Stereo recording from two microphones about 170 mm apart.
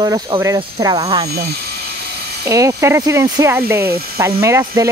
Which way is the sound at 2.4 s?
20° right (ahead or behind).